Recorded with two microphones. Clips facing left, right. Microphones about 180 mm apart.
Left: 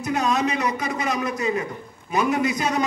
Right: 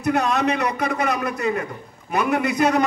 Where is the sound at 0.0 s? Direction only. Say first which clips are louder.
Right 2 dB; 60° right (ahead or behind).